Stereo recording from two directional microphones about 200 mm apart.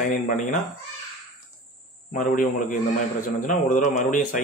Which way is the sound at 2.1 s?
40° left (ahead or behind).